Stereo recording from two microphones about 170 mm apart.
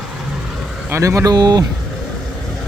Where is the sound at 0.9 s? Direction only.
20° right (ahead or behind).